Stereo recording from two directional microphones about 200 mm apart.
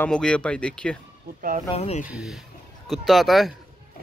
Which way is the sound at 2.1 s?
Centre (ahead or behind).